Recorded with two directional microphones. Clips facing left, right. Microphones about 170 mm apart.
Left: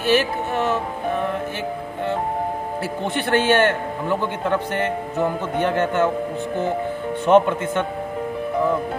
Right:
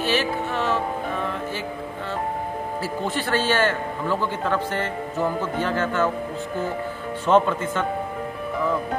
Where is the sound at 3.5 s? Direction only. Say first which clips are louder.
Left 5 dB; 60° left (ahead or behind).